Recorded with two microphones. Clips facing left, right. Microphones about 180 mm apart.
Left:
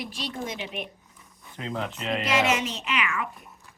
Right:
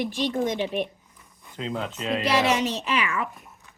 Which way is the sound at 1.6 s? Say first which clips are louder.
Right 2 dB; 15° right (ahead or behind).